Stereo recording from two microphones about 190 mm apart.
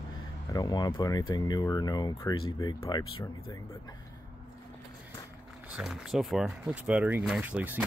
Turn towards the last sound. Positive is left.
turn(degrees=-10)  # may be behind; listen again after turning